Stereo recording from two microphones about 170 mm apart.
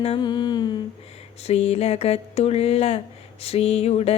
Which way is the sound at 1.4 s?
35° left (ahead or behind).